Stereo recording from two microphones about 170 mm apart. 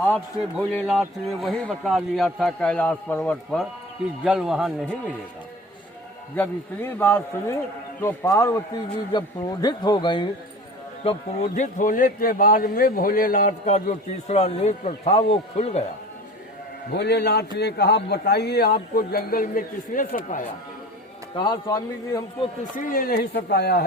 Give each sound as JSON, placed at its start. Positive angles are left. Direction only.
{"t": 0.5, "sound": "speech", "side_deg": 0}
{"t": 6.3, "sound": "a man's voice", "side_deg": 10}
{"t": 11.0, "sound": "a man's voice", "side_deg": 35}
{"t": 16.9, "sound": "speech", "side_deg": 75}
{"t": 21.3, "sound": "a man's voice", "side_deg": 25}
{"t": 22.7, "sound": "speech", "side_deg": 55}